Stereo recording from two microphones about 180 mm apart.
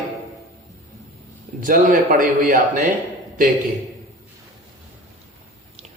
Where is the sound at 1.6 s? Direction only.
50° right (ahead or behind).